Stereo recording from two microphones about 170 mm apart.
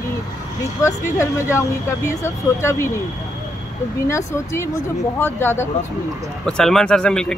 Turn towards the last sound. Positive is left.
turn(degrees=5)  # may be behind; listen again after turning